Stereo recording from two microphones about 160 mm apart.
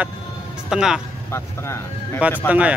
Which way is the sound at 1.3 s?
15° left (ahead or behind).